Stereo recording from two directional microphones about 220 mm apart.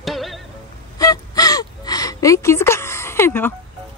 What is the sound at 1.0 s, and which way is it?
Gasp, 15° left (ahead or behind).